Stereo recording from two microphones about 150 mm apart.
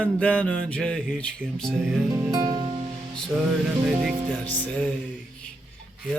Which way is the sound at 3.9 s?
Centre (ahead or behind).